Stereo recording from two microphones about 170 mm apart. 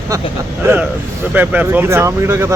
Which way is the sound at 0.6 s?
10° right (ahead or behind).